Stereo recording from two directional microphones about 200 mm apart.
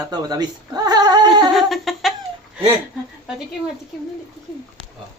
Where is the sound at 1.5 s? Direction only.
Centre (ahead or behind).